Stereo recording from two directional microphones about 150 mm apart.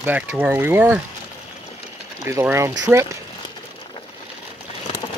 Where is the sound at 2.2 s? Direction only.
15° right (ahead or behind).